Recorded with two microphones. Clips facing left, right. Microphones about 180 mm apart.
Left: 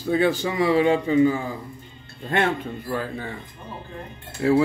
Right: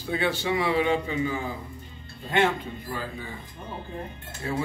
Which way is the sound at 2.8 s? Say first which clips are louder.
Left 8 dB; 65° left (ahead or behind).